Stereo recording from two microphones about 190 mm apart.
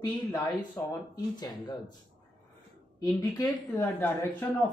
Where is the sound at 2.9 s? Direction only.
15° left (ahead or behind).